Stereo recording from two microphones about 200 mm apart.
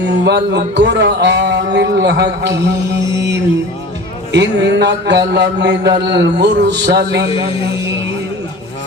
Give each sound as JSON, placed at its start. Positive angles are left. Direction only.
{"t": 0.0, "sound": "speech", "side_deg": -55}
{"t": 3.0, "sound": "music", "side_deg": -15}
{"t": 4.3, "sound": "speech", "side_deg": -60}